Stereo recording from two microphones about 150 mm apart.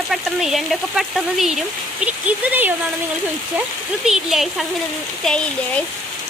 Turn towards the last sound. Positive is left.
turn(degrees=5)  # may be behind; listen again after turning